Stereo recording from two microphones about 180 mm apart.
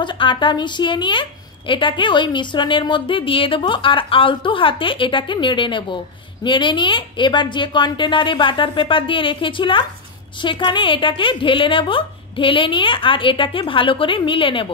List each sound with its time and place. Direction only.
0.0 s a woman's voice: 25° left (ahead or behind)